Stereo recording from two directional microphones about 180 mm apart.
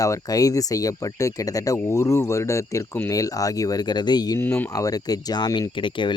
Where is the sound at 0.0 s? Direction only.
20° left (ahead or behind).